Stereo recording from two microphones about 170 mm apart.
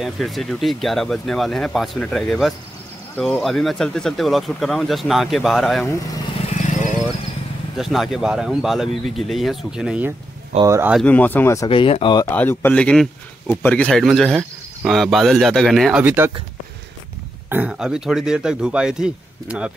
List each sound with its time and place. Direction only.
0.0 s speech: centre (ahead or behind)
5.9 s speech: 20° left (ahead or behind)
6.5 s vehicle: 45° left (ahead or behind)
7.7 s speech: centre (ahead or behind)
10.6 s speech: 15° right (ahead or behind)
11.1 s a man's voice: 10° left (ahead or behind)
11.7 s speech: 30° left (ahead or behind)
12.3 s a man's voice: 10° left (ahead or behind)
16.0 s speech: 10° right (ahead or behind)
17.5 s speech: 5° right (ahead or behind)